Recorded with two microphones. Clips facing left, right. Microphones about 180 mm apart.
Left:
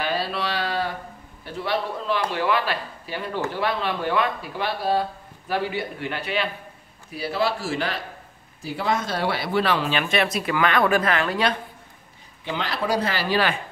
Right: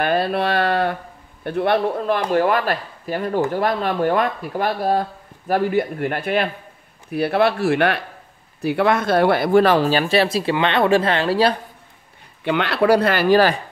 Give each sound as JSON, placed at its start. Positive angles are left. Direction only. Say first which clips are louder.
{"t": 0.0, "sound": "speech", "louder": "right 7 dB", "side_deg": -55}
{"t": 12.4, "sound": "speech", "louder": "right 9 dB", "side_deg": -65}